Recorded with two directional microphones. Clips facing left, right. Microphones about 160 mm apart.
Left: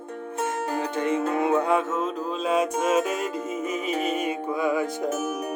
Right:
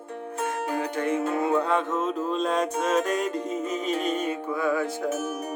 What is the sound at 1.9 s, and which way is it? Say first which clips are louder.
Music: right 1 dB; centre (ahead or behind).